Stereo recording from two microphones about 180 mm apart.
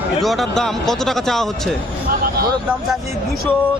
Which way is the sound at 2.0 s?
55° right (ahead or behind).